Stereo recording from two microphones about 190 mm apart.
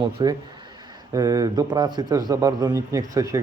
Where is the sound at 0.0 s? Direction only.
20° right (ahead or behind).